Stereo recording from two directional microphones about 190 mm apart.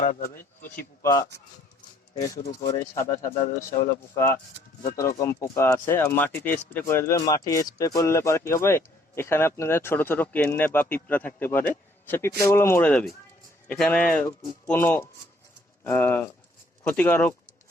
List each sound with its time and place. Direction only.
0.0 s speech: 45° left (ahead or behind)
1.0 s speech: 20° left (ahead or behind)